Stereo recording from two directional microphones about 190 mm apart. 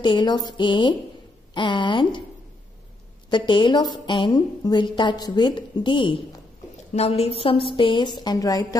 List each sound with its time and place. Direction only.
0.0 s a woman's voice: 25° left (ahead or behind)
3.3 s a woman's voice: 25° left (ahead or behind)